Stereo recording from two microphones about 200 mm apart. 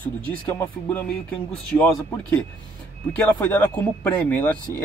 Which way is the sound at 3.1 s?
10° left (ahead or behind).